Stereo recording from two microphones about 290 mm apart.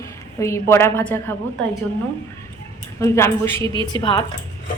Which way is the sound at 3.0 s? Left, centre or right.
Centre.